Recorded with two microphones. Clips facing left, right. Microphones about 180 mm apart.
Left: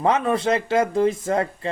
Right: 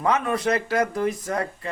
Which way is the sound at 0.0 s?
25° left (ahead or behind).